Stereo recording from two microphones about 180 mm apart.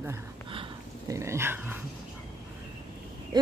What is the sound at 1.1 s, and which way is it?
Dog, 15° right (ahead or behind).